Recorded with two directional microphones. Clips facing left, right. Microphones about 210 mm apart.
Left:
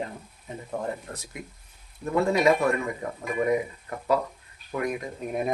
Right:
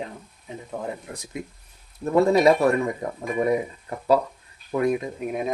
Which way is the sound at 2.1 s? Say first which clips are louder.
Right 5 dB; 35° right (ahead or behind).